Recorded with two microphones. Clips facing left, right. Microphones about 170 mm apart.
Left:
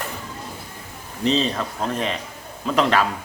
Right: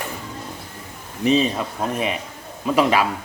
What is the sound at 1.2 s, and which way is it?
Speech, 10° right (ahead or behind).